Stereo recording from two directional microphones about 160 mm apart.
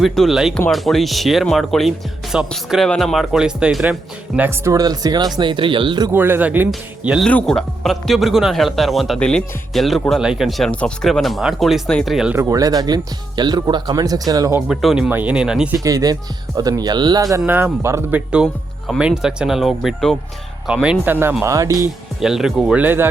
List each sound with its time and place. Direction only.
0.0 s speech: centre (ahead or behind)
4.4 s speech: 15° right (ahead or behind)
6.1 s speech: 15° right (ahead or behind)
12.4 s speech: 20° right (ahead or behind)
14.7 s speech: centre (ahead or behind)
15.8 s speech: 20° right (ahead or behind)
17.3 s speech: 10° right (ahead or behind)
18.3 s speech: 5° right (ahead or behind); by 21.8 s 20° right (ahead or behind)
22.2 s speech: centre (ahead or behind)